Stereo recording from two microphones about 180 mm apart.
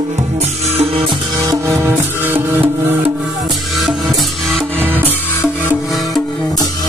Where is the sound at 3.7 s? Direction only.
Centre (ahead or behind).